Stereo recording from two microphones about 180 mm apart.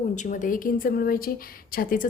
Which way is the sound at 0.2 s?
45° left (ahead or behind).